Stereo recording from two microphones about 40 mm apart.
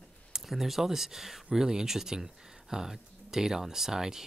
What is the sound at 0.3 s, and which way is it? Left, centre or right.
Speech, centre.